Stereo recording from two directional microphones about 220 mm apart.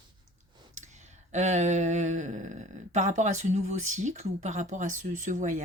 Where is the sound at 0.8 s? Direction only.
30° right (ahead or behind).